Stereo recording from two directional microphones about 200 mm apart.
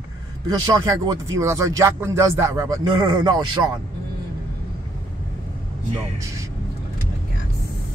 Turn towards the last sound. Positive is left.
turn(degrees=-15)  # may be behind; listen again after turning